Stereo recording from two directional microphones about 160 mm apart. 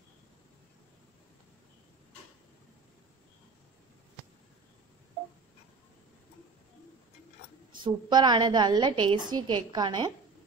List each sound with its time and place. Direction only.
7.7 s a woman's voice: 30° right (ahead or behind)